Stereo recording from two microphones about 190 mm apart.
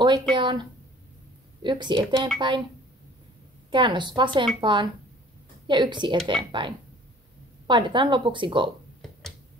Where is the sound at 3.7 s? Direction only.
25° right (ahead or behind).